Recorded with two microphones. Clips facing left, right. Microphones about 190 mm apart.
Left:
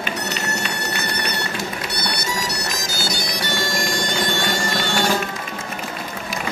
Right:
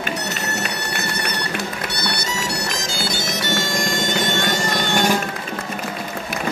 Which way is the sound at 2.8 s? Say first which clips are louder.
Right 1 dB; 25° right (ahead or behind).